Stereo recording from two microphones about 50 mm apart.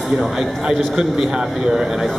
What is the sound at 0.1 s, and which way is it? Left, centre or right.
A man's voice, centre.